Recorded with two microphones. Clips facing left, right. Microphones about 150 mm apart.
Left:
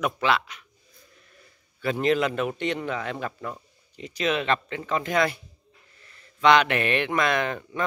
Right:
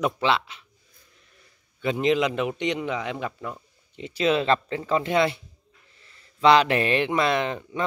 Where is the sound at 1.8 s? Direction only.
20° right (ahead or behind).